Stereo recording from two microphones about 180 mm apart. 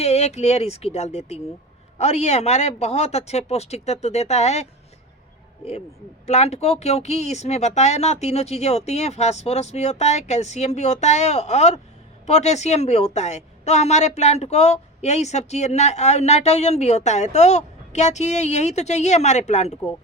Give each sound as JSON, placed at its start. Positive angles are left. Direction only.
{"t": 0.0, "sound": "speech", "side_deg": 35}
{"t": 6.2, "sound": "speech", "side_deg": 35}